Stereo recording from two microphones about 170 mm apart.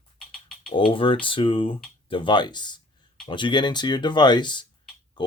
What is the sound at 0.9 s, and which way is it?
Speech, 30° left (ahead or behind).